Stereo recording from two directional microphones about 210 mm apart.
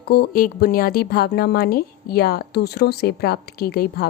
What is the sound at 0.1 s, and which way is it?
A woman's voice, 45° left (ahead or behind).